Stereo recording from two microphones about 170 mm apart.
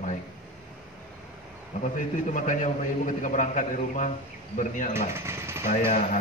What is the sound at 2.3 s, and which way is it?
A man's voice, 50° left (ahead or behind).